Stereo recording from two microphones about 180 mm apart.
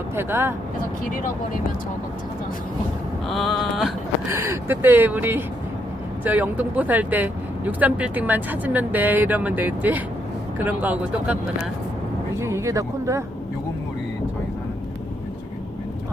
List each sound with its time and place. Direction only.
0.2 s speech: 15° right (ahead or behind)
3.2 s a sound: centre (ahead or behind)
4.3 s speech: 15° right (ahead or behind)
12.4 s speech: 15° right (ahead or behind)